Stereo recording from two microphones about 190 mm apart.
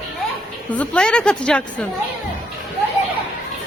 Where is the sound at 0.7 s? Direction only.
5° left (ahead or behind).